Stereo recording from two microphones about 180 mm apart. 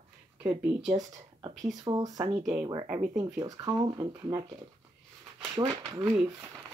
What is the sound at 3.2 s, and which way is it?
Speech, 20° right (ahead or behind).